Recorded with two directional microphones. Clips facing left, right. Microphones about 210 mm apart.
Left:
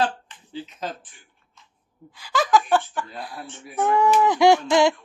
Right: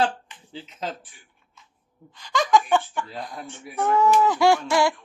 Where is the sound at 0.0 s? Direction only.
25° right (ahead or behind).